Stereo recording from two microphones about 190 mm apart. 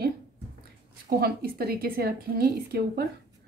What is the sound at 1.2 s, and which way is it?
A woman's voice, 55° right (ahead or behind).